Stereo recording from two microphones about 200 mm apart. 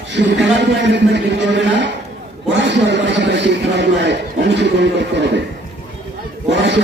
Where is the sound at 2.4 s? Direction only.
60° right (ahead or behind).